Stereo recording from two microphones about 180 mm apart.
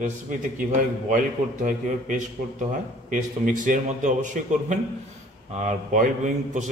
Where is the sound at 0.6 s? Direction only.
50° right (ahead or behind).